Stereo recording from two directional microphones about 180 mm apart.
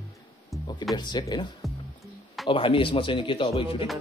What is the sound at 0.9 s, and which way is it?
Speech, 25° left (ahead or behind).